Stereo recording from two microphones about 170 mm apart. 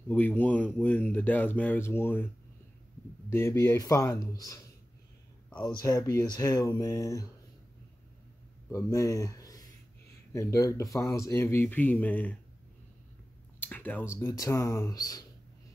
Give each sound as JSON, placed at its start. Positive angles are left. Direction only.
{"t": 0.1, "sound": "speech", "side_deg": 10}
{"t": 3.3, "sound": "speech", "side_deg": 15}
{"t": 5.6, "sound": "speech", "side_deg": 20}
{"t": 8.7, "sound": "speech", "side_deg": 20}
{"t": 13.6, "sound": "speech", "side_deg": 10}